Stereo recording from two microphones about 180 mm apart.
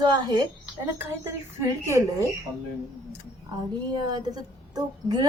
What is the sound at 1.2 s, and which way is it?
A woman's voice, 15° right (ahead or behind).